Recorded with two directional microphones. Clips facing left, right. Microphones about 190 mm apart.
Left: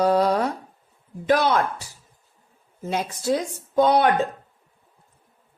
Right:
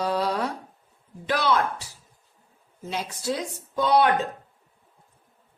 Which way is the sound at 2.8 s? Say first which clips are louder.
Left 4 dB; 50° left (ahead or behind).